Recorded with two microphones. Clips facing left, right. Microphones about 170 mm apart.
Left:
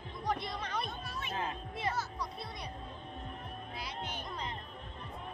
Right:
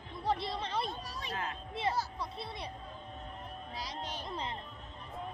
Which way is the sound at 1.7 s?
25° right (ahead or behind).